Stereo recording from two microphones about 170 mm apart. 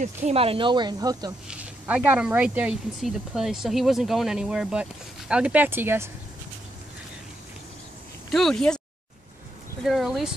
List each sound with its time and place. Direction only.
0.0 s speech: 40° right (ahead or behind); by 1.3 s 25° right (ahead or behind)
1.5 s speech: 5° right (ahead or behind)
8.3 s speech: centre (ahead or behind)
9.8 s speech: centre (ahead or behind)